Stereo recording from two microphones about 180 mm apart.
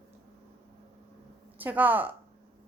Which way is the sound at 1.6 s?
10° right (ahead or behind).